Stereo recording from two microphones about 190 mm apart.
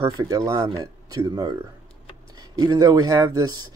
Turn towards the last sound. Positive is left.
turn(degrees=-20)  # may be behind; listen again after turning